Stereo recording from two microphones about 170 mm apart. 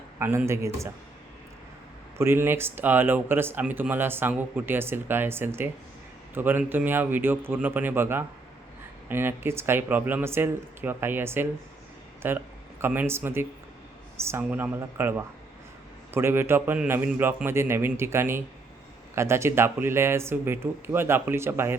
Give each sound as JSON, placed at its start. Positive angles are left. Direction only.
{"t": 0.2, "sound": "speech", "side_deg": -15}
{"t": 2.1, "sound": "speech", "side_deg": -15}